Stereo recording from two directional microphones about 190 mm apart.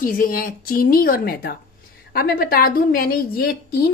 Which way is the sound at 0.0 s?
50° left (ahead or behind).